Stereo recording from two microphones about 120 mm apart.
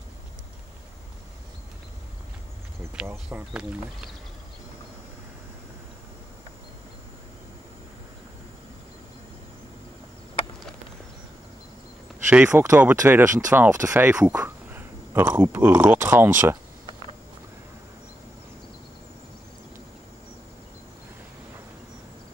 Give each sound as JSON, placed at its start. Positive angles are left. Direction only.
{"t": 3.3, "sound": "speech", "side_deg": -10}
{"t": 12.3, "sound": "speech", "side_deg": -15}
{"t": 14.0, "sound": "speech", "side_deg": -10}